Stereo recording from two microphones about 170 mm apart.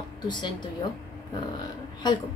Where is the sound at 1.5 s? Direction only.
25° left (ahead or behind).